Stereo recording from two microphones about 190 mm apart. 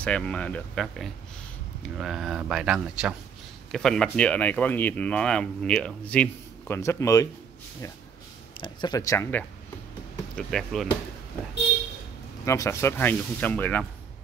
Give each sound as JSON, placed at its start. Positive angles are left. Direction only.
{"t": 0.0, "sound": "speech", "side_deg": 5}
{"t": 8.5, "sound": "speech", "side_deg": 25}
{"t": 10.3, "sound": "speech", "side_deg": 0}
{"t": 12.4, "sound": "speech", "side_deg": 15}